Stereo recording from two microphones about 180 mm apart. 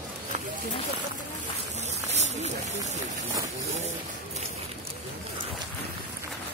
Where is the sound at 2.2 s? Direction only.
40° right (ahead or behind).